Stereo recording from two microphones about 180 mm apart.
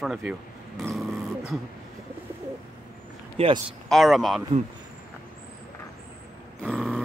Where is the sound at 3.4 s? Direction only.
30° right (ahead or behind).